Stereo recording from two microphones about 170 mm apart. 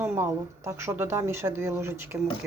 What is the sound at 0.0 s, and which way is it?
Speech, 15° right (ahead or behind).